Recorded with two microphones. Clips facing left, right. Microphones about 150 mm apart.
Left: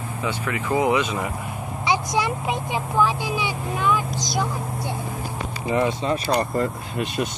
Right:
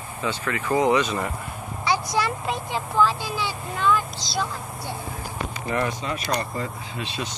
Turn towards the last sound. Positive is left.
turn(degrees=55)  # may be behind; listen again after turning